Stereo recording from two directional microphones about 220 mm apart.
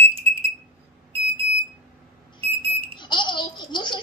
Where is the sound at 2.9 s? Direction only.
20° left (ahead or behind).